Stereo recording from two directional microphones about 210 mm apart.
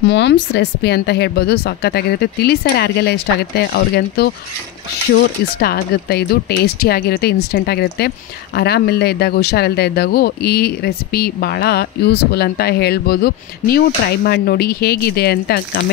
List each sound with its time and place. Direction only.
0.0 s speech: 55° left (ahead or behind)